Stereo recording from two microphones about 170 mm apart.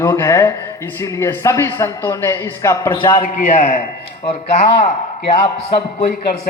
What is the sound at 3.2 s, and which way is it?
Speech, 50° left (ahead or behind).